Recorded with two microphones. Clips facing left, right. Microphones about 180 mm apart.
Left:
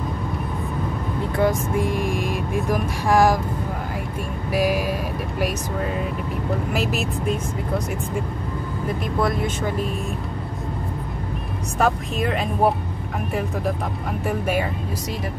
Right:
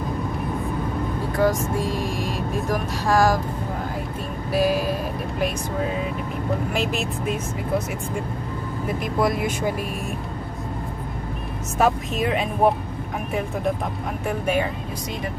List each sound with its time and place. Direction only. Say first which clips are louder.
1.4 s vehicle: even; 15° left (ahead or behind)
4.5 s vehicle: right 1 dB; 10° left (ahead or behind)
6.7 s speech: left 1 dB; 5° left (ahead or behind)
9.0 s speech: right 1 dB; 5° right (ahead or behind)
11.8 s speech: right 1 dB; 5° right (ahead or behind)
14.2 s speech: even; 5° left (ahead or behind)